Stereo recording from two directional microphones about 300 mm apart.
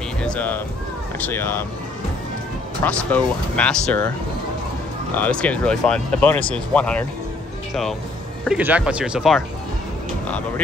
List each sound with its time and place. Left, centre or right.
0.2 s music: centre
1.2 s speech: centre
2.8 s speech: centre
5.1 s speech: centre
8.5 s speech: centre